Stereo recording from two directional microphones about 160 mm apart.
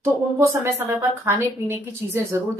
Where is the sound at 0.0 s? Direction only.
15° right (ahead or behind).